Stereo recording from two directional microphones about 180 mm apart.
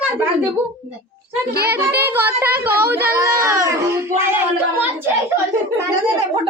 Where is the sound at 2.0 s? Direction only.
10° right (ahead or behind).